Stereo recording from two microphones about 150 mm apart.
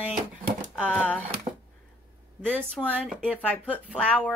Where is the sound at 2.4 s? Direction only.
5° left (ahead or behind).